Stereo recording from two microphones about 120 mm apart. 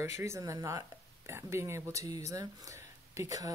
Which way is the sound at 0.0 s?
25° right (ahead or behind).